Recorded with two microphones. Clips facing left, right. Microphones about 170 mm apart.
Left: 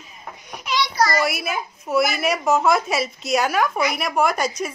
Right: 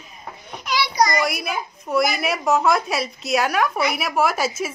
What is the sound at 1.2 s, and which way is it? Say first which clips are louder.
A woman's voice: left 1 dB; 5° left (ahead or behind).